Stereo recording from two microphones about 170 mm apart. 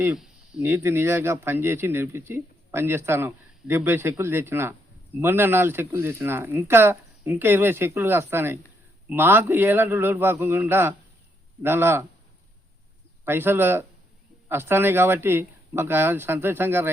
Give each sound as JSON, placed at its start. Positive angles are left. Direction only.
{"t": 0.0, "sound": "speech", "side_deg": -5}
{"t": 13.2, "sound": "speech", "side_deg": -15}